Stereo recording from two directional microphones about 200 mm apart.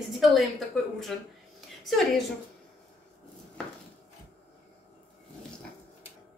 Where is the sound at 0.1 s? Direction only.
Centre (ahead or behind).